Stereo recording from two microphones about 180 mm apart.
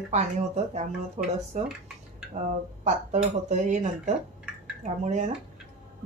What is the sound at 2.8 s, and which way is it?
A woman's voice, 40° right (ahead or behind).